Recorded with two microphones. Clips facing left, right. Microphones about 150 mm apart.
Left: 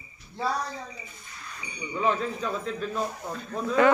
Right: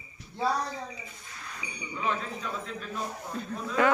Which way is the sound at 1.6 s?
10° right (ahead or behind).